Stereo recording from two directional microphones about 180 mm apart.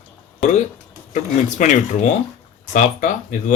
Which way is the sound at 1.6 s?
45° left (ahead or behind).